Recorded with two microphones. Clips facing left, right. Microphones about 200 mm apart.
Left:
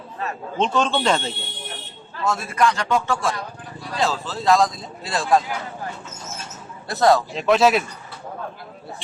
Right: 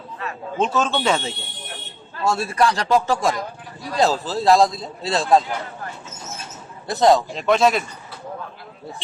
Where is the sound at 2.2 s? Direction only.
30° right (ahead or behind).